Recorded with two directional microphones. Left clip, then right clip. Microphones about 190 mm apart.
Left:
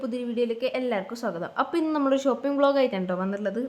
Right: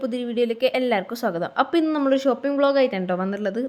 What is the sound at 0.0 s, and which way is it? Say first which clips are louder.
A woman's voice: right 4 dB; 20° right (ahead or behind).